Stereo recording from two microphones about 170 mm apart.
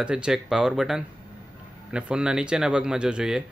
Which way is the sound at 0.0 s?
5° right (ahead or behind).